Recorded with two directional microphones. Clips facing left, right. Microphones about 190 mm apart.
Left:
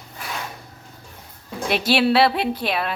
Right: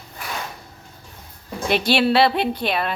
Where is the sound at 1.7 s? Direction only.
5° left (ahead or behind).